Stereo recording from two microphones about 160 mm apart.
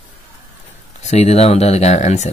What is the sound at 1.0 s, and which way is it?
Speech, 45° left (ahead or behind).